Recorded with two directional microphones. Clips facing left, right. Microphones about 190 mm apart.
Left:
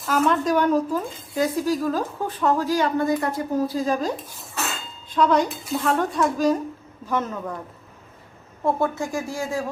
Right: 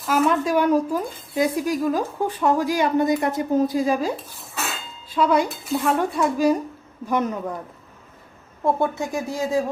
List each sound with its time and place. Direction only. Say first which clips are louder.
0.1 s speech: right 1 dB; 10° right (ahead or behind)
8.6 s speech: right 1 dB; 20° right (ahead or behind)